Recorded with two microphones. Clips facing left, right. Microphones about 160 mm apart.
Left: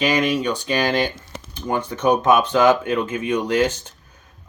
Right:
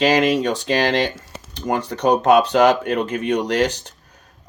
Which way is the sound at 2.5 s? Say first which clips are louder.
Right 1 dB; 70° right (ahead or behind).